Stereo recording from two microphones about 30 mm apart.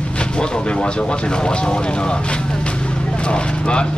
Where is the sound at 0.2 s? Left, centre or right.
Left.